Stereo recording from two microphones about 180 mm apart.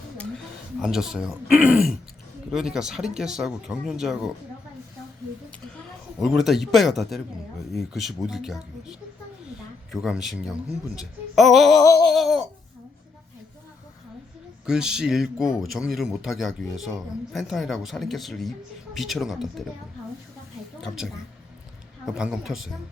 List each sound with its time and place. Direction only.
0.8 s speech: centre (ahead or behind)
6.1 s speech: centre (ahead or behind)
12.1 s a sound: centre (ahead or behind)
14.7 s speech: 5° right (ahead or behind)
20.8 s speech: centre (ahead or behind)